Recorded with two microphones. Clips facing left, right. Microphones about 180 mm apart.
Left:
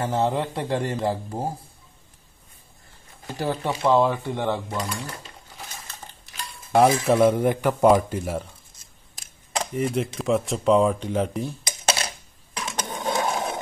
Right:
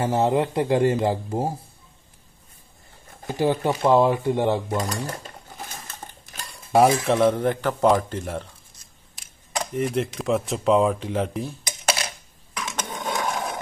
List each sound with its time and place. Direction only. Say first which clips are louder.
0.1 s speech: right 3 dB; 20° right (ahead or behind)
3.3 s speech: right 5 dB; 20° right (ahead or behind)
4.6 s dishes: right 4 dB; 45° right (ahead or behind)
6.7 s speech: even; centre (ahead or behind)
7.2 s a man's voice: left 1 dB; 10° left (ahead or behind)
9.8 s speech: right 1 dB; centre (ahead or behind)
12.5 s a sound: even; 30° left (ahead or behind)